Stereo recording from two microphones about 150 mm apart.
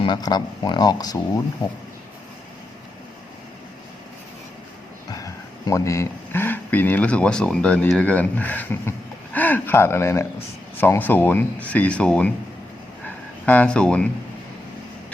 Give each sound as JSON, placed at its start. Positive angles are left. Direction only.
{"t": 0.0, "sound": "speech", "side_deg": 30}
{"t": 5.1, "sound": "speech", "side_deg": 25}
{"t": 13.4, "sound": "speech", "side_deg": 10}